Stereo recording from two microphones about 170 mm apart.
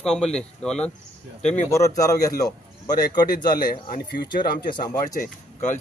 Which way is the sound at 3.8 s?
55° left (ahead or behind).